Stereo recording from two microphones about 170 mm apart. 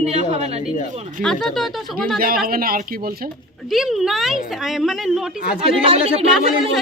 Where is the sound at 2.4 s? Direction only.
60° right (ahead or behind).